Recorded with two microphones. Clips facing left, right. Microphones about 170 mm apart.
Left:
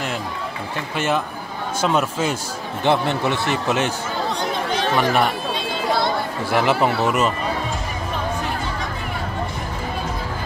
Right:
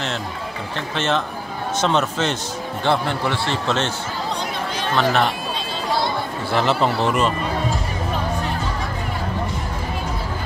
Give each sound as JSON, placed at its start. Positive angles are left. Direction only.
{"t": 0.9, "sound": "speech", "side_deg": 10}
{"t": 2.8, "sound": "speech", "side_deg": 20}
{"t": 4.9, "sound": "speech", "side_deg": 10}
{"t": 6.5, "sound": "speech", "side_deg": 10}